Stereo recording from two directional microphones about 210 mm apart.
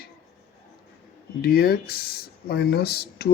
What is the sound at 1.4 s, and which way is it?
Speech, 45° left (ahead or behind).